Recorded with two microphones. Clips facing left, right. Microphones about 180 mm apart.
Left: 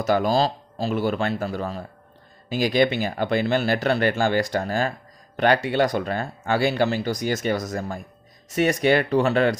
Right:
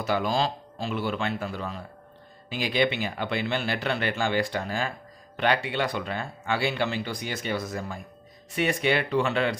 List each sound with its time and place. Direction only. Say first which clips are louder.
0.0 s speech: left 5 dB; 45° left (ahead or behind)